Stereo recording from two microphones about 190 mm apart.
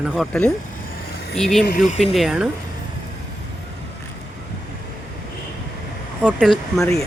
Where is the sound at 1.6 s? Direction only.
45° left (ahead or behind).